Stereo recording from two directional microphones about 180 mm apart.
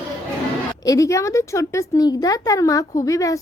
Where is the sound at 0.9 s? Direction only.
15° left (ahead or behind).